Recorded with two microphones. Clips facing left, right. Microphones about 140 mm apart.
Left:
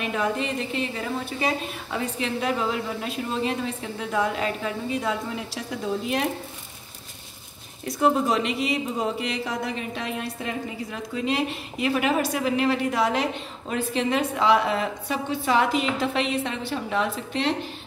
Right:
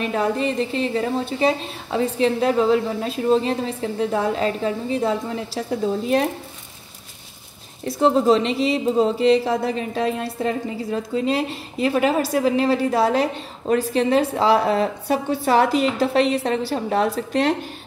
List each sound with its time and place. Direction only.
0.0 s a woman's voice: 35° right (ahead or behind)
7.8 s a woman's voice: 30° right (ahead or behind); by 17.6 s 45° right (ahead or behind)